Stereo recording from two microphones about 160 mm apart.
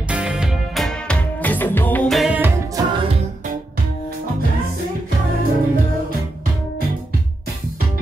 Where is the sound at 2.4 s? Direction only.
20° right (ahead or behind).